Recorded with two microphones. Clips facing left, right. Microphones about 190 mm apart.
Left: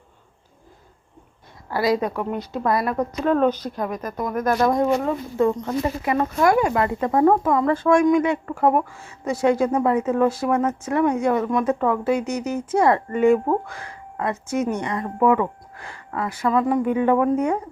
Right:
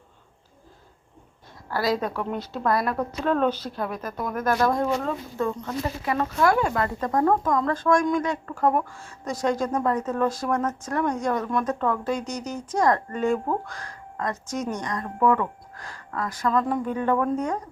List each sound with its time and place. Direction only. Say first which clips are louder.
1.7 s speech: left 4 dB; centre (ahead or behind)
4.5 s speech: left 4 dB; 15° left (ahead or behind)